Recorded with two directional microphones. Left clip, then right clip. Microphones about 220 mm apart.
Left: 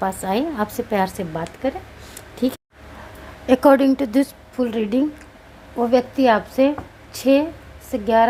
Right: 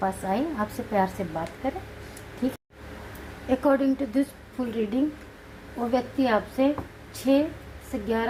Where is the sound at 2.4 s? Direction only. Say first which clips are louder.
Left 7 dB; 45° left (ahead or behind).